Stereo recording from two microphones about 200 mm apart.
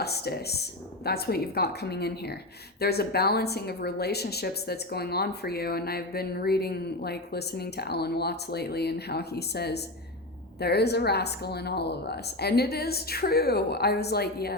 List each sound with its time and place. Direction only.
0.0 s a woman's voice: 55° left (ahead or behind)